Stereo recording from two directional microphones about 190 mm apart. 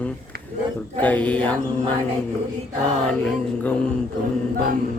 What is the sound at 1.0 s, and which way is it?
Mantra, 5° left (ahead or behind).